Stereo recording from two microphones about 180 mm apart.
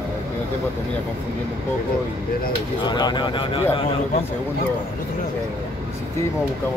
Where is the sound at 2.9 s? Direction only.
25° left (ahead or behind).